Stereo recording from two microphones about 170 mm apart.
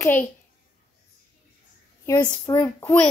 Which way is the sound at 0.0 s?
10° left (ahead or behind).